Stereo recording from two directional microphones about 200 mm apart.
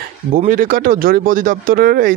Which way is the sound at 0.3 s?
45° right (ahead or behind).